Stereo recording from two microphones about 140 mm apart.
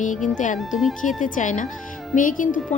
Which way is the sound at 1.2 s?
70° left (ahead or behind).